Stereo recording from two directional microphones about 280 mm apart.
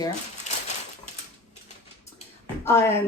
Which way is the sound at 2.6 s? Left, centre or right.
Centre.